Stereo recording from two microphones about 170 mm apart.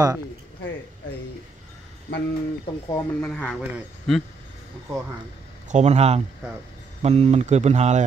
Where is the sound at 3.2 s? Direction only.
5° left (ahead or behind).